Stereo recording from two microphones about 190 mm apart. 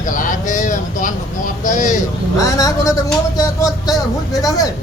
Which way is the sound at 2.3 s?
15° left (ahead or behind).